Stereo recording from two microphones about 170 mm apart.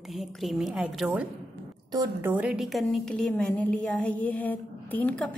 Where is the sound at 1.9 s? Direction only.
20° right (ahead or behind).